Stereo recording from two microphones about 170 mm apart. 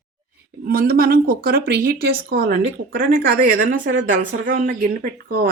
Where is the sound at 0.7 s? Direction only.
60° right (ahead or behind).